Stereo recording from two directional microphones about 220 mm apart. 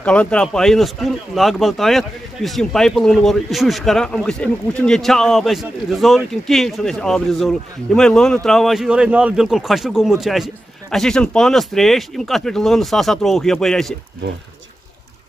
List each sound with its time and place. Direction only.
0.0 s speech: 5° left (ahead or behind)